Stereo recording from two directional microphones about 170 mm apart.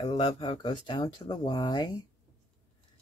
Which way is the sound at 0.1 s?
40° left (ahead or behind).